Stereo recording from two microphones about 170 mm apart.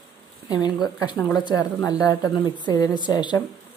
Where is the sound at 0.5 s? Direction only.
25° left (ahead or behind).